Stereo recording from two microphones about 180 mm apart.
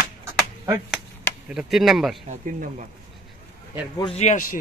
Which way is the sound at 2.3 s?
40° right (ahead or behind).